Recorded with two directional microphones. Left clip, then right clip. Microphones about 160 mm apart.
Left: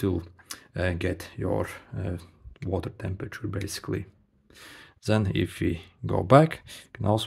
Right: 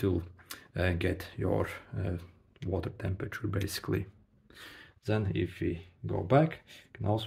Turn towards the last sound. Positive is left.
turn(degrees=50)  # may be behind; listen again after turning